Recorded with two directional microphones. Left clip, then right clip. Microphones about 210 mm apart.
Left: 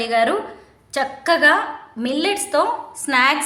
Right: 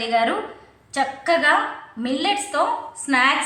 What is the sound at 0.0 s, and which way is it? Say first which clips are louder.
A woman's voice: left 2 dB; 55° left (ahead or behind).